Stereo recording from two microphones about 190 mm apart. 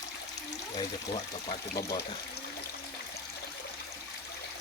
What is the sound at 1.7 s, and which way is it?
Speech, 20° left (ahead or behind).